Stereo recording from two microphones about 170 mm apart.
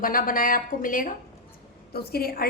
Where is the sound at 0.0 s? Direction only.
55° left (ahead or behind).